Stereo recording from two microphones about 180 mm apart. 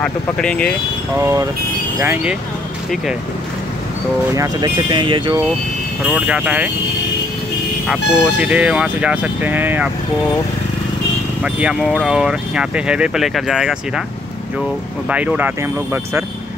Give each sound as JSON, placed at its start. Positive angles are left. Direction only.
{"t": 0.0, "sound": "speech", "side_deg": 5}
{"t": 1.2, "sound": "speech", "side_deg": -20}
{"t": 4.4, "sound": "speech", "side_deg": -25}
{"t": 6.0, "sound": "speech", "side_deg": -10}
{"t": 7.9, "sound": "speech", "side_deg": -5}
{"t": 11.4, "sound": "speech", "side_deg": -5}
{"t": 15.0, "sound": "speech", "side_deg": -5}